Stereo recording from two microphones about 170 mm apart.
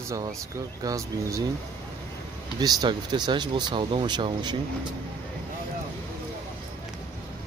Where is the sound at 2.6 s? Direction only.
25° right (ahead or behind).